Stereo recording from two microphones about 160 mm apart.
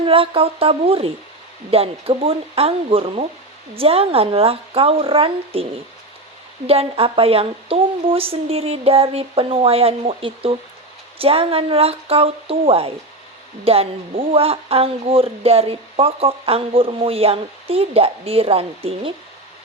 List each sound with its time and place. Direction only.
0.0 s speech: 35° right (ahead or behind)
6.7 s speech: 35° right (ahead or behind)